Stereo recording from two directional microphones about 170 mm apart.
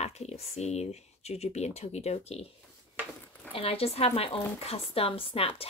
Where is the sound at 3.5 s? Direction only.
35° left (ahead or behind).